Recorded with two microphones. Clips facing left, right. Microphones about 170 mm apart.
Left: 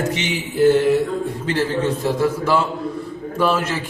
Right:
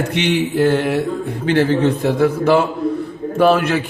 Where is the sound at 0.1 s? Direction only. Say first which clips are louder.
Right 7 dB; 60° right (ahead or behind).